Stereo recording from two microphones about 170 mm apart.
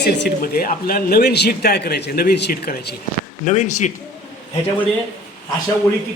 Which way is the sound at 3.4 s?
45° left (ahead or behind).